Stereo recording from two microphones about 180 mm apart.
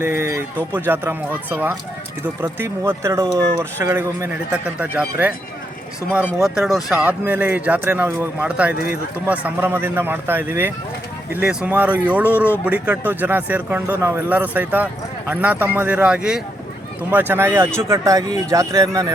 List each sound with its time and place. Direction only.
0.2 s speech: 15° right (ahead or behind)
6.4 s speech: centre (ahead or behind)
8.7 s speech: 60° left (ahead or behind)
9.1 s speech: 10° right (ahead or behind)